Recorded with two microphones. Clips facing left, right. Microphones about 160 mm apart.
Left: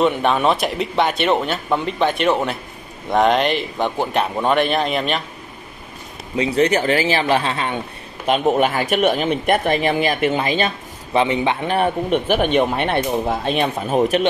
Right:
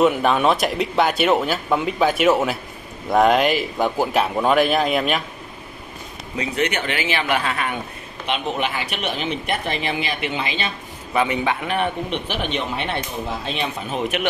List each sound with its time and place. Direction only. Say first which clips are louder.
0.0 s speech: even; centre (ahead or behind)
6.3 s a man's voice: left 6 dB; 30° left (ahead or behind)
8.3 s speech: left 7 dB; 45° left (ahead or behind)
11.1 s a man's voice: left 3 dB; 25° left (ahead or behind)
11.6 s speech: left 4 dB; 40° left (ahead or behind)